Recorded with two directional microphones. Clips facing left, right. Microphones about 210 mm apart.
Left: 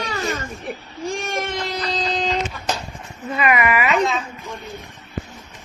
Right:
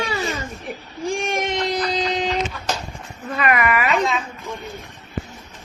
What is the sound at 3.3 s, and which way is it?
Speech, 5° left (ahead or behind).